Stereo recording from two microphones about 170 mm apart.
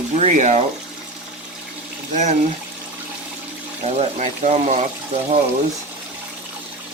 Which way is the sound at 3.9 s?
40° right (ahead or behind).